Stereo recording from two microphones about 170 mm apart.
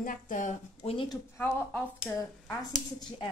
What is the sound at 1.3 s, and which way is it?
Speech, 10° left (ahead or behind).